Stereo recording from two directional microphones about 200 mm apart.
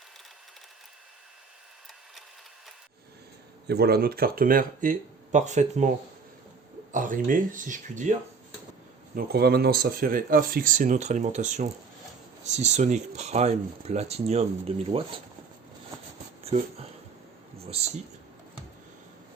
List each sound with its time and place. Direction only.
3.7 s speech: 50° right (ahead or behind); by 5.9 s 35° right (ahead or behind)
6.9 s speech: 40° right (ahead or behind)
9.1 s speech: 50° right (ahead or behind); by 15.2 s 25° right (ahead or behind)
17.7 s speech: 30° right (ahead or behind)